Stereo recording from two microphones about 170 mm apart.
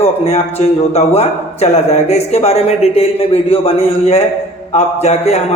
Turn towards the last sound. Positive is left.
turn(degrees=40)  # may be behind; listen again after turning